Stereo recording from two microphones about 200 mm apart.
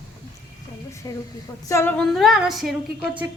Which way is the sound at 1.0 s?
15° left (ahead or behind).